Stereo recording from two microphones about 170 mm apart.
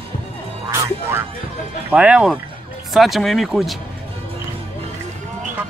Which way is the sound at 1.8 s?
5° right (ahead or behind).